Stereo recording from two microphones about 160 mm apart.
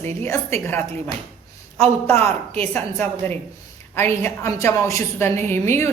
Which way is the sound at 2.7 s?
10° left (ahead or behind).